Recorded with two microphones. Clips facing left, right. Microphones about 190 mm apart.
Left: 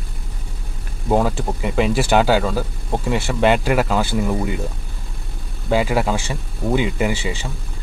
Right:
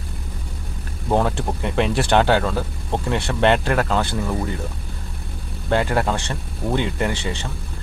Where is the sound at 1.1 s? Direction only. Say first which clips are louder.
Left 2 dB; 5° left (ahead or behind).